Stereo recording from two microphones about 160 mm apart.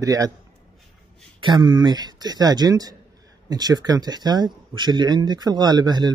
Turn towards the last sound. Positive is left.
turn(degrees=-25)  # may be behind; listen again after turning